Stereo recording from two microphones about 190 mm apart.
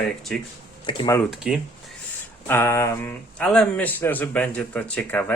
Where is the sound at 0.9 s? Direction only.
25° left (ahead or behind).